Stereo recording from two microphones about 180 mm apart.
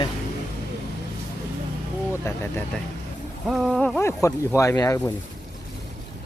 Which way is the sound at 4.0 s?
15° left (ahead or behind).